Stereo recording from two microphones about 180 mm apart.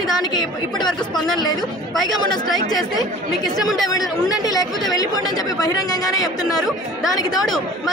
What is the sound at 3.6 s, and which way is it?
Speech, centre (ahead or behind).